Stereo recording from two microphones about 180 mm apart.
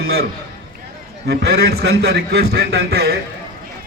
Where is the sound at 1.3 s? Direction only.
65° right (ahead or behind).